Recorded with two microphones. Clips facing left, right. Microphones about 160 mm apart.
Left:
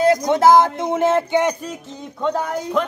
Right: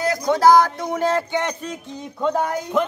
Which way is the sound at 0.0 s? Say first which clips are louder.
Left 3 dB; 20° left (ahead or behind).